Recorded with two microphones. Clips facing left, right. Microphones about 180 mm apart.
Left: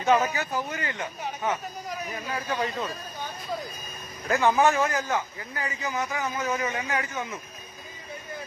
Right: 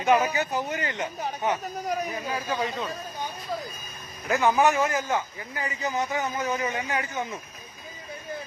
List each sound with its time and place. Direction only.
0.0 s speech: 15° right (ahead or behind)
2.3 s speech: 5° right (ahead or behind)
4.3 s speech: 15° right (ahead or behind)
7.1 s speech: 30° right (ahead or behind)